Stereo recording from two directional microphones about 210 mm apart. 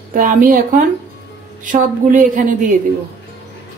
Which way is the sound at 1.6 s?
40° right (ahead or behind).